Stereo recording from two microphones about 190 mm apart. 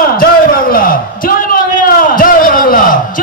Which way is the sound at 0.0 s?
50° left (ahead or behind).